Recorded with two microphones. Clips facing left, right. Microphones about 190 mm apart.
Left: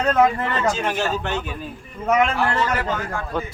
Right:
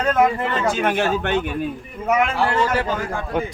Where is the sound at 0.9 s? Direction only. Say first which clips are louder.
Right 4 dB; 55° right (ahead or behind).